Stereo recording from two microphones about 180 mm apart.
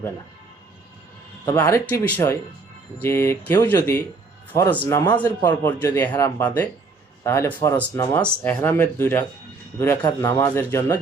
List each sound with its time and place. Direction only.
1.5 s speech: 15° left (ahead or behind)